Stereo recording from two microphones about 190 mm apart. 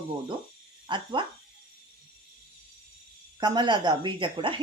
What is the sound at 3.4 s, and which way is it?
Speech, 25° right (ahead or behind).